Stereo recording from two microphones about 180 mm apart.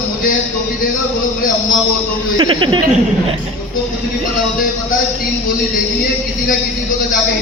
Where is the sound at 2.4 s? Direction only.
25° right (ahead or behind).